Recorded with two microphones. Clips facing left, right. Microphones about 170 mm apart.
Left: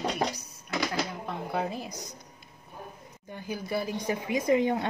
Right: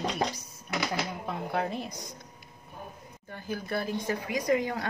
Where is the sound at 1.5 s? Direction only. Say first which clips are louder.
Even; 5° left (ahead or behind).